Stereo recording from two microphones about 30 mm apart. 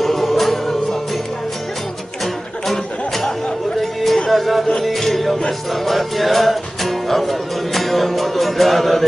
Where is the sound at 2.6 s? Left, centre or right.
Centre.